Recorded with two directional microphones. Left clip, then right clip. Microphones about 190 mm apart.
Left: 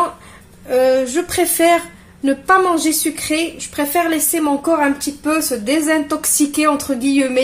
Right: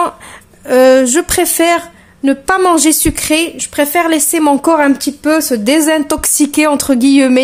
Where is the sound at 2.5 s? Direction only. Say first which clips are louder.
Right 3 dB; 45° right (ahead or behind).